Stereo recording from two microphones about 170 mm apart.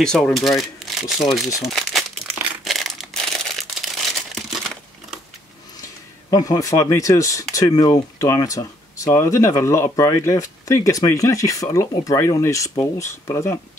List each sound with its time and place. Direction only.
0.0 s speech: 5° left (ahead or behind)
2.6 s crumpling: centre (ahead or behind)
6.3 s speech: 20° left (ahead or behind)